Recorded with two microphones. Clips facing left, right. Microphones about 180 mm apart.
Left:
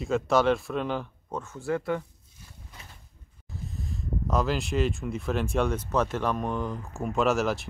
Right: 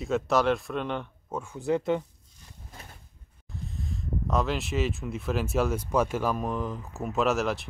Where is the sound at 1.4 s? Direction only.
15° right (ahead or behind).